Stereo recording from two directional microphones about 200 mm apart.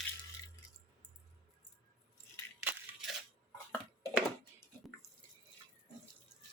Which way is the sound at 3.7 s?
Centre (ahead or behind).